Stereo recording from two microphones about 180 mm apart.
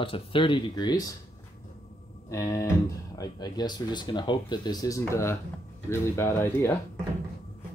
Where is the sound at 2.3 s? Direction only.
15° left (ahead or behind).